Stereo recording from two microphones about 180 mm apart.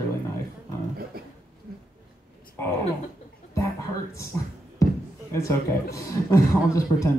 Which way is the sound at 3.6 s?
15° left (ahead or behind).